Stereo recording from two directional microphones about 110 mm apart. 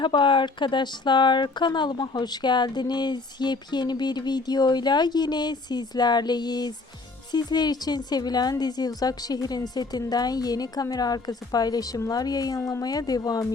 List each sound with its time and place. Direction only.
0.0 s speech: 45° left (ahead or behind)